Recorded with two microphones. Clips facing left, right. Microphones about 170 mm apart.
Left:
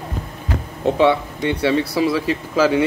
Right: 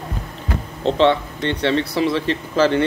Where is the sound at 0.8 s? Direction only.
10° left (ahead or behind).